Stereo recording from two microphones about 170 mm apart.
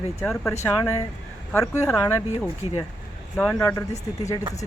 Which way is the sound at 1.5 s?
15° left (ahead or behind).